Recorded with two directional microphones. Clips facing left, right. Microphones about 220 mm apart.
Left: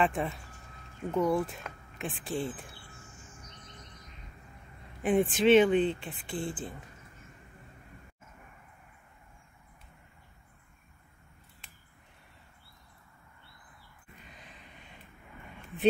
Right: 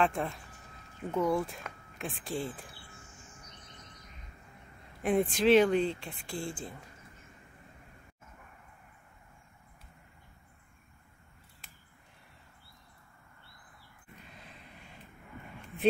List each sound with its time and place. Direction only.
0.0 s speech: centre (ahead or behind)
5.0 s speech: centre (ahead or behind)